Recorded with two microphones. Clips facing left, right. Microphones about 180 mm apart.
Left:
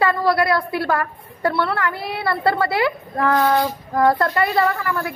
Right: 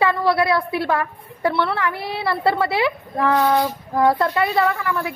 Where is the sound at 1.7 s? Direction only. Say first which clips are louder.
Even; 25° right (ahead or behind).